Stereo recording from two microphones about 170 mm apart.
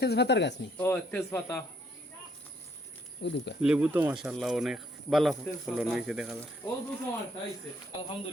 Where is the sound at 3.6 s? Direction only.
5° right (ahead or behind).